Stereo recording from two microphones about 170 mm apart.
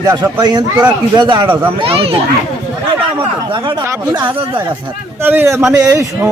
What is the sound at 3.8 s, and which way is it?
Speech, 15° right (ahead or behind).